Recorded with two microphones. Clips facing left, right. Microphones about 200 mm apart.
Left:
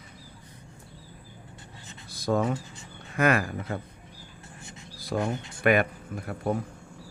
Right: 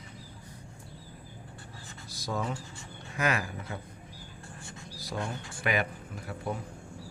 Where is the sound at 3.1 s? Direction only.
55° left (ahead or behind).